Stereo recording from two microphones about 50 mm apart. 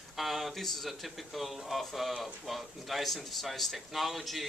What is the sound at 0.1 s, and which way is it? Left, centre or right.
Speech, centre.